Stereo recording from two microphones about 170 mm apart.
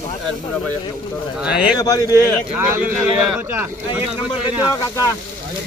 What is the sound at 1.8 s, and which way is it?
Speech, 20° left (ahead or behind).